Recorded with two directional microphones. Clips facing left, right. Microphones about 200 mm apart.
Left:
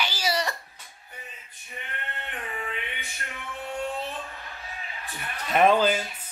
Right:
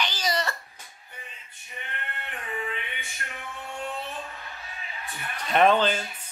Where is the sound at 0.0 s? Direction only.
10° left (ahead or behind).